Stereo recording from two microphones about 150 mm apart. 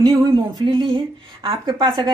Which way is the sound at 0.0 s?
25° right (ahead or behind).